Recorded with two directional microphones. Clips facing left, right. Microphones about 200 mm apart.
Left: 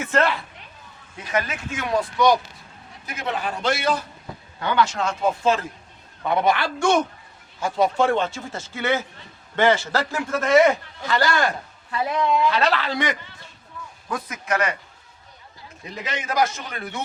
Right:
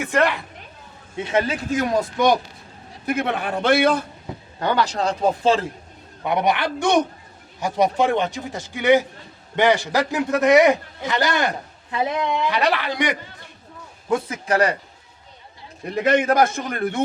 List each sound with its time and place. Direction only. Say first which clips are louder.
0.0 s a man's voice: right 1 dB; 15° right (ahead or behind)
1.1 s a man's voice: right 5 dB; 25° right (ahead or behind); by 2.3 s 45° right (ahead or behind)
3.1 s a man's voice: right 5 dB; 60° right (ahead or behind)
4.6 s a man's voice: right 1 dB; 35° right (ahead or behind)
6.2 s a man's voice: even; 15° right (ahead or behind)
14.1 s a man's voice: right 5 dB; 30° right (ahead or behind)
15.9 s a man's voice: right 12 dB; 55° right (ahead or behind)